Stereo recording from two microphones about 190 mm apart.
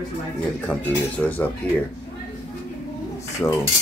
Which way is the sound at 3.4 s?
10° left (ahead or behind).